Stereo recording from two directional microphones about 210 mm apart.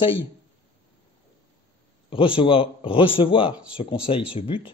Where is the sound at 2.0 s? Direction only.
25° left (ahead or behind).